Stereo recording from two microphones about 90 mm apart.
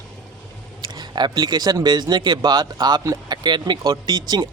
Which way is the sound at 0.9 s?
55° right (ahead or behind).